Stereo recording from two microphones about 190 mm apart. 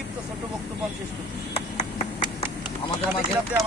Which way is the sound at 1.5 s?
35° left (ahead or behind).